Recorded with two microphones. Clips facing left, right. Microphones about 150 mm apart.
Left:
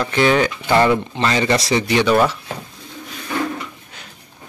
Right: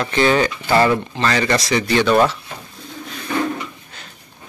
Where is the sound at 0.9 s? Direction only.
20° left (ahead or behind).